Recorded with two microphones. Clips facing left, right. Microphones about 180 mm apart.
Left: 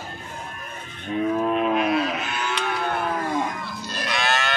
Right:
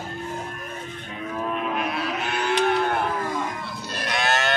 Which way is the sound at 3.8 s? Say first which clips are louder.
Even; 55° right (ahead or behind).